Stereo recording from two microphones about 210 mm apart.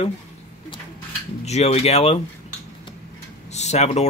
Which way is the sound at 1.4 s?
30° left (ahead or behind).